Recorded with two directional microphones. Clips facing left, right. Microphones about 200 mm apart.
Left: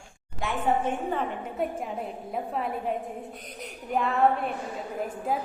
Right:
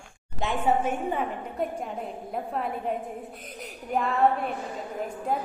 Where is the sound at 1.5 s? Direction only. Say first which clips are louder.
Left 1 dB; 5° left (ahead or behind).